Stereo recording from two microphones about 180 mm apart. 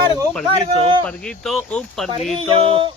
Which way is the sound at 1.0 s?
5° left (ahead or behind).